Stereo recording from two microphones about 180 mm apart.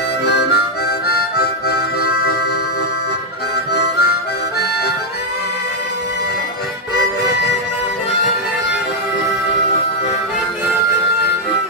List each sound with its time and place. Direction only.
0.2 s harmonica: 65° left (ahead or behind)
3.7 s harmonica: 65° left (ahead or behind)